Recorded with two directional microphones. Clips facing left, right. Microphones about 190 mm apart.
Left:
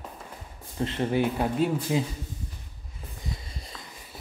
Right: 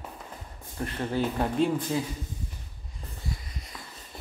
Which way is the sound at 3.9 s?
10° left (ahead or behind).